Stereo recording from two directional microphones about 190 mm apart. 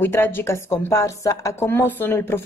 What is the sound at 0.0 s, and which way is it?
A woman's voice, 10° left (ahead or behind).